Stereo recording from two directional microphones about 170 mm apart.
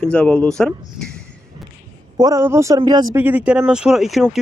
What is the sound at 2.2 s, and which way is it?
Speech, 20° right (ahead or behind).